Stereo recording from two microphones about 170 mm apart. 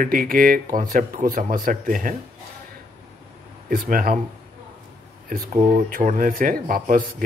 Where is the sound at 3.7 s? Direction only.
55° right (ahead or behind).